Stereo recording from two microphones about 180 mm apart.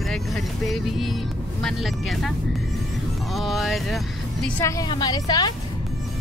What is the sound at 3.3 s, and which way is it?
Speech, centre (ahead or behind).